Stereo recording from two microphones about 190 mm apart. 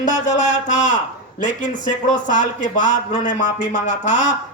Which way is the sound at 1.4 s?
40° left (ahead or behind).